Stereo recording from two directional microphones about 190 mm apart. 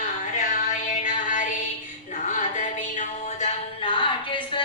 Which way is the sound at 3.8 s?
25° left (ahead or behind).